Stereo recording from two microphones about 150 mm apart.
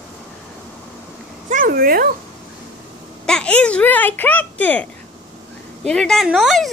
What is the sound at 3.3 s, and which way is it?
Speech, 5° left (ahead or behind).